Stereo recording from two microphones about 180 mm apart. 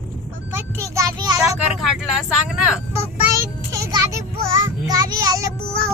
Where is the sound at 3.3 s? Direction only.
15° right (ahead or behind).